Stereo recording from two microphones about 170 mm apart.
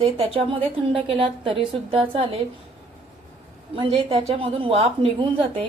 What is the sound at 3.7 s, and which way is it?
A woman's voice, 30° right (ahead or behind).